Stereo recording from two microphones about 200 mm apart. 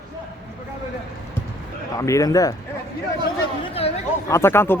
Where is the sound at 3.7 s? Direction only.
30° left (ahead or behind).